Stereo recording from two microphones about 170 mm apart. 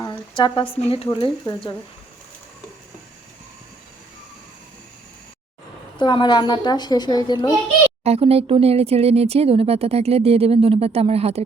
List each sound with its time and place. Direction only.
0.3 s a woman's voice: 30° left (ahead or behind)
6.0 s a woman's voice: 25° left (ahead or behind)
8.0 s speech: 35° right (ahead or behind)